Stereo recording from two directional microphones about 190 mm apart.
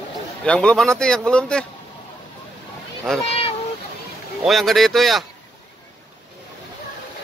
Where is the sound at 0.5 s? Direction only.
5° left (ahead or behind).